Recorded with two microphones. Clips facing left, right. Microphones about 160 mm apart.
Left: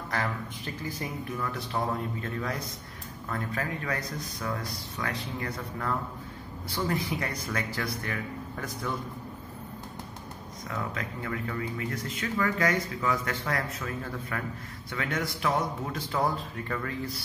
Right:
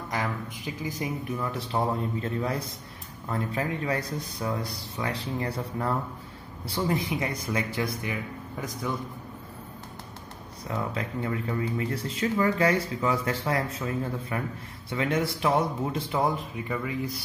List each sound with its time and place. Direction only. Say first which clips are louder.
0.1 s speech: right 1 dB; 15° right (ahead or behind)
10.7 s speech: right 4 dB; 25° right (ahead or behind)